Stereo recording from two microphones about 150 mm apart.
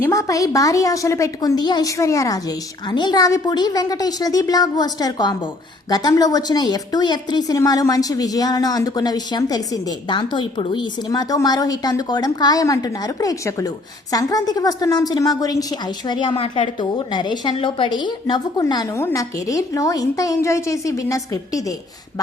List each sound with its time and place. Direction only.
0.0 s a woman's voice: 20° left (ahead or behind)